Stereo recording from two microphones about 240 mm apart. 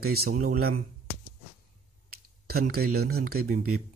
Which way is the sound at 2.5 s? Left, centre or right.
Right.